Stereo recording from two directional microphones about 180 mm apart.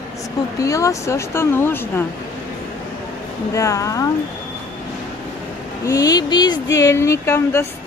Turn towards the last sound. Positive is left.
turn(degrees=15)  # may be behind; listen again after turning